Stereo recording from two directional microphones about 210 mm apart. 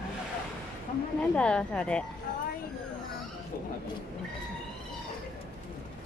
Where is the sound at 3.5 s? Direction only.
45° left (ahead or behind).